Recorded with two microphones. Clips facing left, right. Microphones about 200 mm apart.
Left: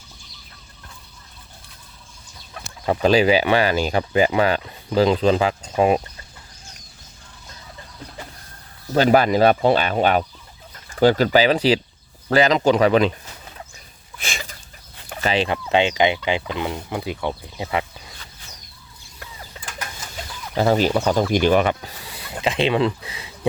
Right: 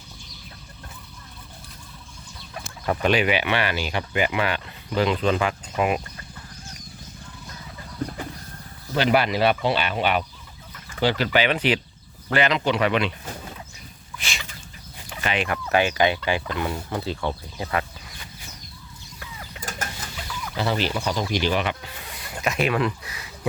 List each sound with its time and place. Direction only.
2.8 s speech: 30° left (ahead or behind)
8.9 s speech: 45° left (ahead or behind)
14.2 s chicken: 50° left (ahead or behind)
15.2 s speech: 30° left (ahead or behind)
15.5 s speech: 20° left (ahead or behind)
20.6 s speech: 45° left (ahead or behind)
22.1 s a sound: 25° left (ahead or behind)